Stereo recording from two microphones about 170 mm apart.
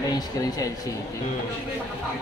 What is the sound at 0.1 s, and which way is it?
Speech, 20° left (ahead or behind).